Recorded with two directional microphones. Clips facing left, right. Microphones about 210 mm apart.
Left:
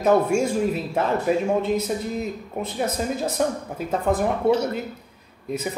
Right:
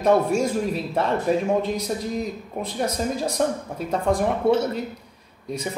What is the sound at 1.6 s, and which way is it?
A man's voice, 5° left (ahead or behind).